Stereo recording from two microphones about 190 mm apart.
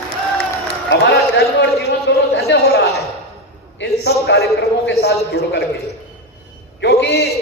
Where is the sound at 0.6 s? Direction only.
65° left (ahead or behind).